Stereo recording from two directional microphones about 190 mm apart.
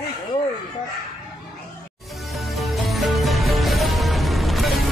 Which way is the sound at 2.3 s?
Centre (ahead or behind).